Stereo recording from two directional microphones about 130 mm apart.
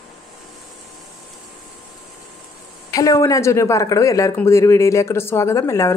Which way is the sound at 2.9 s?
25° left (ahead or behind).